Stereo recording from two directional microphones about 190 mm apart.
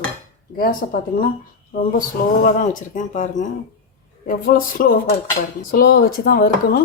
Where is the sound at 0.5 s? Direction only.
50° left (ahead or behind).